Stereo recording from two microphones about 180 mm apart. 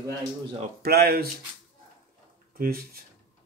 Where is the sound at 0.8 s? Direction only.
60° right (ahead or behind).